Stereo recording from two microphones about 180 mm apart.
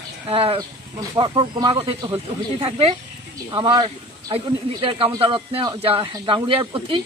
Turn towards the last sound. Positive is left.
turn(degrees=-30)  # may be behind; listen again after turning